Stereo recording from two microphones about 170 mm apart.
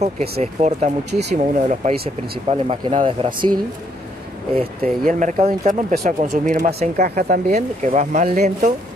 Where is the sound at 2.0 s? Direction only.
65° right (ahead or behind).